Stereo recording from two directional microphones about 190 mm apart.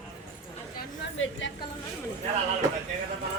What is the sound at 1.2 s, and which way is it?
Speech, 75° left (ahead or behind).